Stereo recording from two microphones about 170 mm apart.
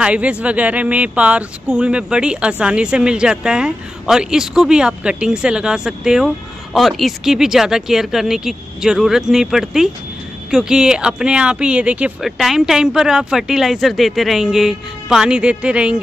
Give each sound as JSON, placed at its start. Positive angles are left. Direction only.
{"t": 0.0, "sound": "speech", "side_deg": -5}